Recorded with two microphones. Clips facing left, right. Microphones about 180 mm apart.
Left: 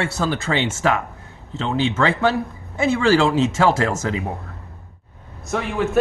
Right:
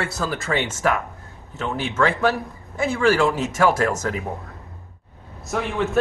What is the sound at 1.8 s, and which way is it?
Speech, 25° left (ahead or behind).